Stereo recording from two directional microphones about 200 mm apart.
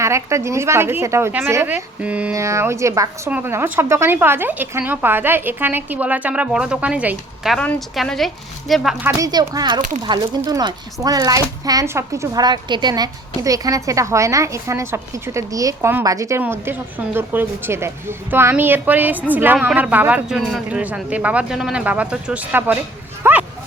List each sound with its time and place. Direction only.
0.0 s a woman's voice: 15° right (ahead or behind)